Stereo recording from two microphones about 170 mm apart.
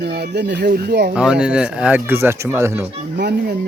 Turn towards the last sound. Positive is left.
turn(degrees=-80)